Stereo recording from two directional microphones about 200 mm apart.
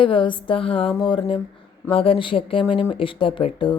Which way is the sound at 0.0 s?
25° left (ahead or behind).